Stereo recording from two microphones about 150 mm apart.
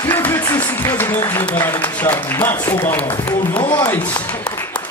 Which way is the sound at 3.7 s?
15° left (ahead or behind).